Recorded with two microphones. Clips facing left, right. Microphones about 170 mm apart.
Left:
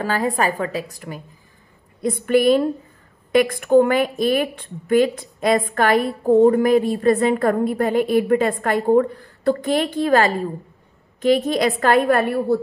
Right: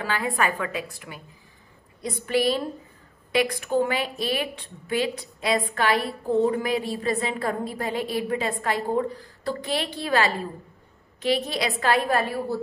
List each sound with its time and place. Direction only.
0.0 s a woman's voice: 40° left (ahead or behind)
2.0 s a woman's voice: 55° left (ahead or behind)